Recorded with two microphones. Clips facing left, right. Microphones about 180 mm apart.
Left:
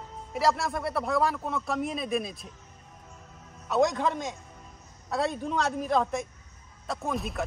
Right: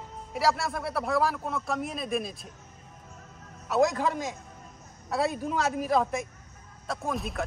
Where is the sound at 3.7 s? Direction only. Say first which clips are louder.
Even; centre (ahead or behind).